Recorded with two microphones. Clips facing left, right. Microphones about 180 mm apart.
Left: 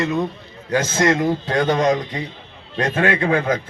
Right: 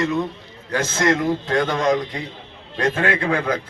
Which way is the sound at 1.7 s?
20° left (ahead or behind).